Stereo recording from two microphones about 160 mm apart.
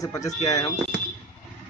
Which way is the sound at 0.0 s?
20° left (ahead or behind).